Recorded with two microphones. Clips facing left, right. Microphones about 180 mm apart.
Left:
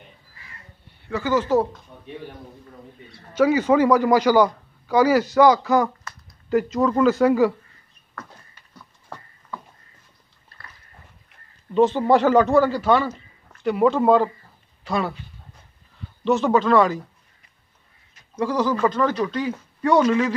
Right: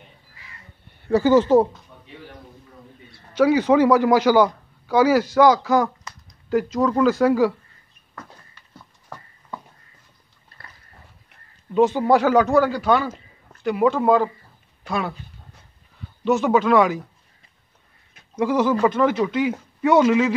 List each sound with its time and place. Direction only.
1.0 s speech: 35° right (ahead or behind)
3.3 s a man's voice: centre (ahead or behind)
6.1 s a sound: 20° right (ahead or behind)
6.5 s a man's voice: centre (ahead or behind)
11.7 s a man's voice: 10° right (ahead or behind)
16.3 s speech: 5° right (ahead or behind)
18.3 s speech: 15° right (ahead or behind)
18.9 s speech: 10° right (ahead or behind)